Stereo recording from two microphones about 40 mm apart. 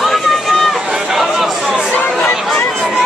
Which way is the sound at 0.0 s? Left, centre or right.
Centre.